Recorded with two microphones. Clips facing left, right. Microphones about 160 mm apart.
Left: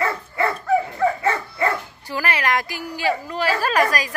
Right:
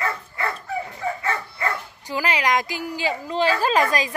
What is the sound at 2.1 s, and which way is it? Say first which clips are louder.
A woman's voice: even; 15° right (ahead or behind).